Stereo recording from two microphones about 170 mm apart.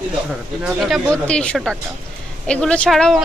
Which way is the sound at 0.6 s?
Centre (ahead or behind).